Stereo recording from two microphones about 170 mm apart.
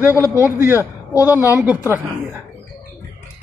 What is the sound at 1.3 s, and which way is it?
Speech, 10° right (ahead or behind).